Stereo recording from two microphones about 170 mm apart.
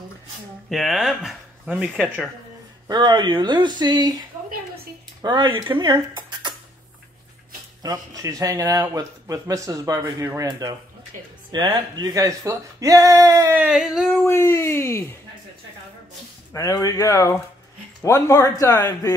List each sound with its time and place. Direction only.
0.7 s speech: centre (ahead or behind)
2.9 s a man's voice: 25° right (ahead or behind)
7.8 s a man's voice: 20° right (ahead or behind)
13.7 s speech: centre (ahead or behind)
14.1 s speech: 15° left (ahead or behind)
16.5 s speech: 20° left (ahead or behind)